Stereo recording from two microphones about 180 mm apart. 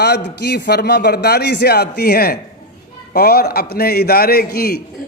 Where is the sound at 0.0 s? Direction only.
70° left (ahead or behind).